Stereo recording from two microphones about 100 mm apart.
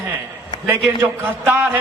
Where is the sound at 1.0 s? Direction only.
20° right (ahead or behind).